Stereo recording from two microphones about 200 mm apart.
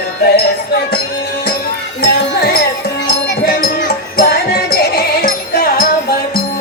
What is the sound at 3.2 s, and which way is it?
Music, 55° left (ahead or behind).